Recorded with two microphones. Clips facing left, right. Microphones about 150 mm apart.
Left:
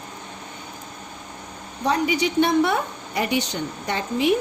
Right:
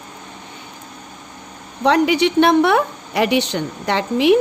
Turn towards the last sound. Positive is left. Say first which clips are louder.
# right 7 dB
turn(degrees=-70)  # may be behind; listen again after turning